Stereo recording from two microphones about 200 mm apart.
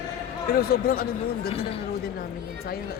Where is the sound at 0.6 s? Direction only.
50° left (ahead or behind).